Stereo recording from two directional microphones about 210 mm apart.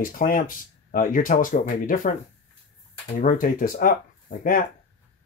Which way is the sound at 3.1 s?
40° left (ahead or behind).